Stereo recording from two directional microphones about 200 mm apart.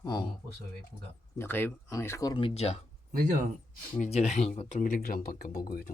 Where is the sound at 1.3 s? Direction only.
10° left (ahead or behind); by 2.8 s 30° left (ahead or behind).